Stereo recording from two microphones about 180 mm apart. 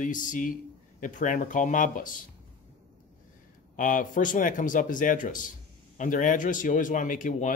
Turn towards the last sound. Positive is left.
turn(degrees=45)  # may be behind; listen again after turning